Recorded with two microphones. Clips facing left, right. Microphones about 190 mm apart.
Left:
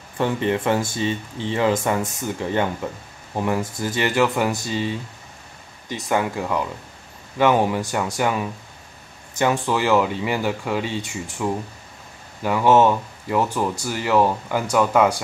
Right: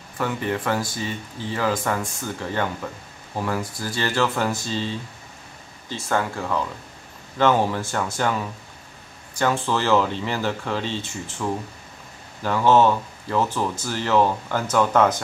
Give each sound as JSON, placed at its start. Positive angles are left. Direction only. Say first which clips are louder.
{"t": 0.2, "sound": "speech", "louder": "left 4 dB", "side_deg": 25}